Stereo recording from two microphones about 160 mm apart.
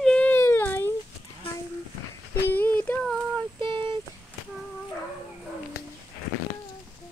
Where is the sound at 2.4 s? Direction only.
10° left (ahead or behind).